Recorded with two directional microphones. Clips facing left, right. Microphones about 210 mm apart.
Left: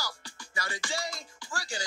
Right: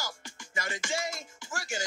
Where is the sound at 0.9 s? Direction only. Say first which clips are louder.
Right 2 dB; 25° right (ahead or behind).